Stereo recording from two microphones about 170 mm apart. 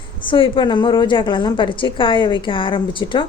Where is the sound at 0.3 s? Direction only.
30° left (ahead or behind).